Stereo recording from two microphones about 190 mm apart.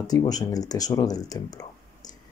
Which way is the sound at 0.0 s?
20° left (ahead or behind).